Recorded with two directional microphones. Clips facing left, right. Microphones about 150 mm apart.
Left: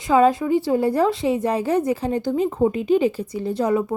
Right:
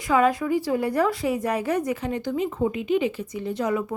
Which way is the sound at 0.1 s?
30° left (ahead or behind).